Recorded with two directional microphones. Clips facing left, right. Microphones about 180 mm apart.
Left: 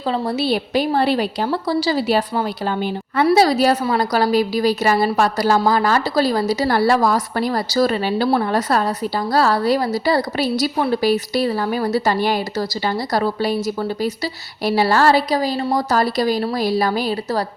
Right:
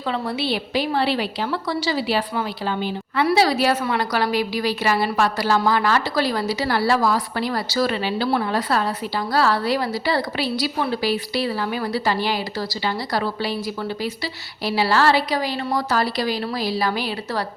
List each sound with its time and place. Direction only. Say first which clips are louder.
0.1 s a woman's voice: left 4 dB; 40° left (ahead or behind)